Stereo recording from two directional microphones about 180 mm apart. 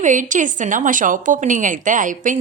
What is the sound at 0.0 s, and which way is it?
A woman's voice, 45° right (ahead or behind).